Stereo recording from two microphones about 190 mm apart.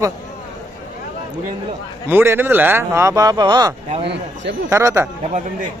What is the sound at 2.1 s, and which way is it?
Speech, 10° right (ahead or behind).